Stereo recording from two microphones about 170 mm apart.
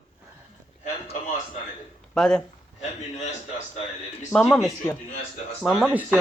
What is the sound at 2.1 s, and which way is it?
Speech, 5° left (ahead or behind).